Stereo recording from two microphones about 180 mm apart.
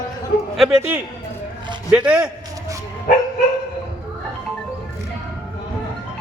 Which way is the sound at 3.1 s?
50° left (ahead or behind).